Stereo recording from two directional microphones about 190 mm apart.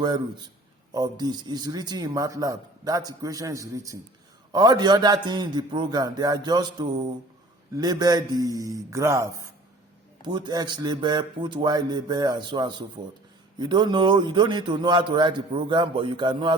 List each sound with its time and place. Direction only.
0.9 s a man's voice: 20° right (ahead or behind)